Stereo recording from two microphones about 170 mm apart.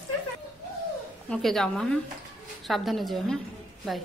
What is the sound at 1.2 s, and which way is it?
A woman's voice, 5° left (ahead or behind).